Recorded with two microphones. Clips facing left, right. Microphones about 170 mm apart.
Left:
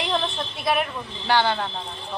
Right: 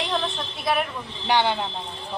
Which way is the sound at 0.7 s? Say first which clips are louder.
Left 1 dB; centre (ahead or behind).